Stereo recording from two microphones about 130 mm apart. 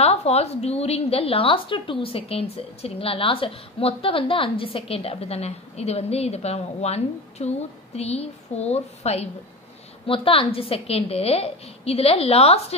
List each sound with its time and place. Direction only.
0.0 s a woman's voice: 55° left (ahead or behind)